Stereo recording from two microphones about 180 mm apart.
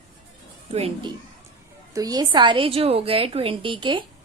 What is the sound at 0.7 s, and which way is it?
Speech, 35° right (ahead or behind).